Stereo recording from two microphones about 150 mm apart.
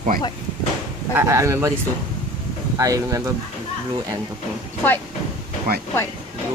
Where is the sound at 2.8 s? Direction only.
20° right (ahead or behind).